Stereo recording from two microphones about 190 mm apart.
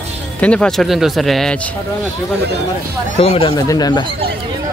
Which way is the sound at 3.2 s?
30° left (ahead or behind).